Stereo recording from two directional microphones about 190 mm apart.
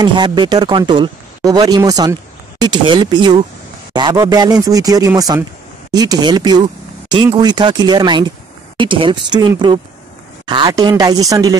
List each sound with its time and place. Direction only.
0.0 s speech: 25° right (ahead or behind)